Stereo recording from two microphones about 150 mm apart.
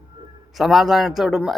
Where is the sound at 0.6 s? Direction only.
Centre (ahead or behind).